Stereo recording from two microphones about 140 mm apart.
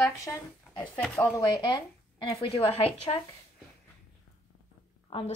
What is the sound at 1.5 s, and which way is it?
Speech, 30° left (ahead or behind).